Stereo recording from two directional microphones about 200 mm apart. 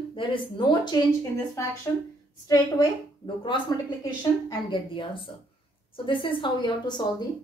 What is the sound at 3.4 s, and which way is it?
A woman's voice, 25° left (ahead or behind).